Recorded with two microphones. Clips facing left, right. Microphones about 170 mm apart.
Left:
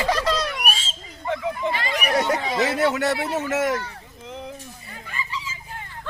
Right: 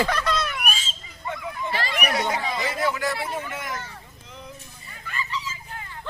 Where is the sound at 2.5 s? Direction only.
75° left (ahead or behind).